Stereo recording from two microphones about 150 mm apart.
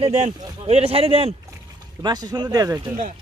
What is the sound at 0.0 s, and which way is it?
Speech, 45° right (ahead or behind).